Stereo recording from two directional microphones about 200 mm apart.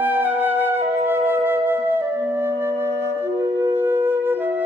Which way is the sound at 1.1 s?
10° right (ahead or behind).